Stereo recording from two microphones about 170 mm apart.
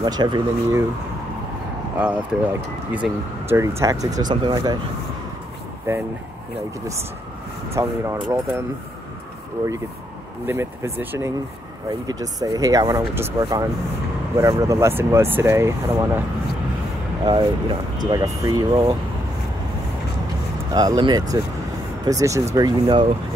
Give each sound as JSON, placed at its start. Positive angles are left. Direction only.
{"t": 0.0, "sound": "speech", "side_deg": -25}
{"t": 2.0, "sound": "speech", "side_deg": -10}
{"t": 7.7, "sound": "speech", "side_deg": -15}
{"t": 10.4, "sound": "speech", "side_deg": -15}
{"t": 17.2, "sound": "speech", "side_deg": -25}
{"t": 20.7, "sound": "speech", "side_deg": -25}